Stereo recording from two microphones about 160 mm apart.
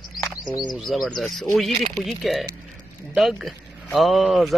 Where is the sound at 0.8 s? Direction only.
Centre (ahead or behind).